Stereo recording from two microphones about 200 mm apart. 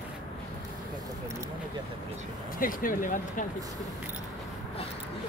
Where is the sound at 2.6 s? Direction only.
45° left (ahead or behind).